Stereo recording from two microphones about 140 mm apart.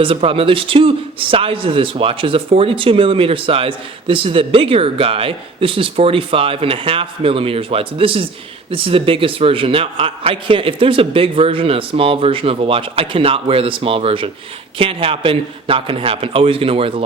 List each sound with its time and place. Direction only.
0.0 s a man's voice: 40° right (ahead or behind)